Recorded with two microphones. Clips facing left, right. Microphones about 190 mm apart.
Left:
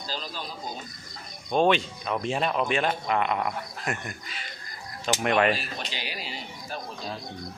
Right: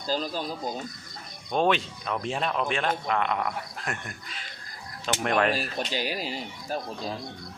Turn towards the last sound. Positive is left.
turn(degrees=-45)  # may be behind; listen again after turning